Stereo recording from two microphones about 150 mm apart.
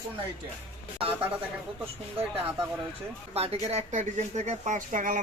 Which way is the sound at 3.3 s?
40° right (ahead or behind).